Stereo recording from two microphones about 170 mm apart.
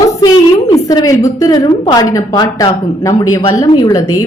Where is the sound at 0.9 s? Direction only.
20° left (ahead or behind).